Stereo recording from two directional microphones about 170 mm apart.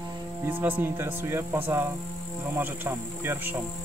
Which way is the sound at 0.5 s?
10° right (ahead or behind).